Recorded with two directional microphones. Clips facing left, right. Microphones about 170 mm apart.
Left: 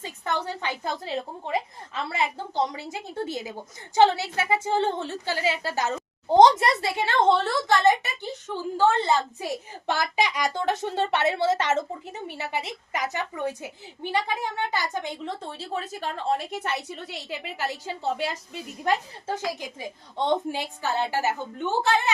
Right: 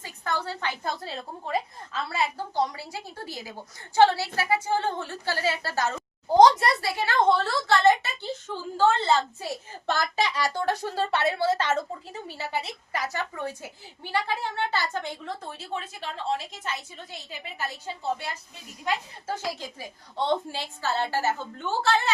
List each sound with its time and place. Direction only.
0.0 s a woman's voice: 20° left (ahead or behind)
15.5 s a woman's voice: 40° left (ahead or behind); by 18.6 s 90° left
19.3 s a woman's voice: 15° left (ahead or behind)